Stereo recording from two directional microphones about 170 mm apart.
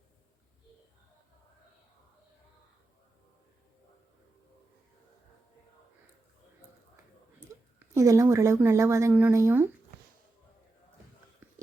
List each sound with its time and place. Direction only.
7.8 s speech: 15° right (ahead or behind)